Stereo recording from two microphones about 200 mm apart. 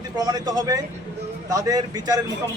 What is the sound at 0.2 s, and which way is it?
A man's voice, 20° right (ahead or behind).